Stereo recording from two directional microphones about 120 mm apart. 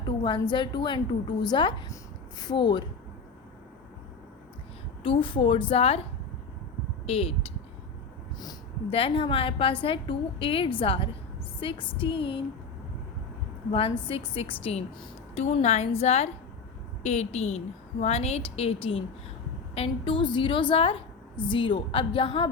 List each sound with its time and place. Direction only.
0.2 s a woman's voice: 40° left (ahead or behind)
5.0 s a woman's voice: 45° left (ahead or behind)
7.1 s a woman's voice: 55° left (ahead or behind)
8.9 s a woman's voice: 50° left (ahead or behind)
13.7 s a woman's voice: 50° left (ahead or behind)
14.6 s a woman's voice: 60° left (ahead or behind)